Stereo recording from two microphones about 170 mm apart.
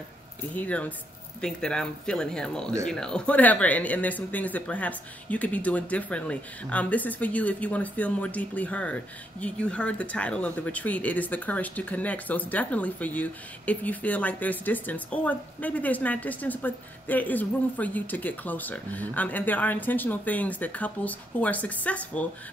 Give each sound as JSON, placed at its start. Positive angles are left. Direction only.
{"t": 0.6, "sound": "speech", "side_deg": 10}